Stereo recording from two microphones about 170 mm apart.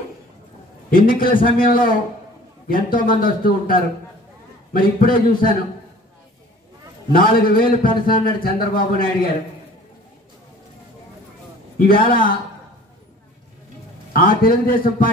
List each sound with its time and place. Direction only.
0.8 s speech: 55° left (ahead or behind)
7.1 s speech: 60° left (ahead or behind)
11.8 s speech: 60° left (ahead or behind)
14.1 s speech: 55° left (ahead or behind)